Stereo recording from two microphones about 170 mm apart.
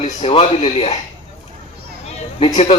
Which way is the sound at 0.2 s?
35° left (ahead or behind).